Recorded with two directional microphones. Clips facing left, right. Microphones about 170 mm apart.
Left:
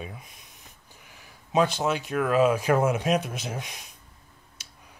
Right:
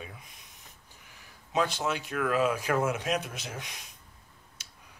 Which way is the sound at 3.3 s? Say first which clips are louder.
Left 6 dB; 15° left (ahead or behind).